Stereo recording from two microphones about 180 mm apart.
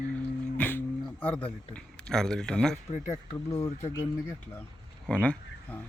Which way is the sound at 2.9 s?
35° left (ahead or behind).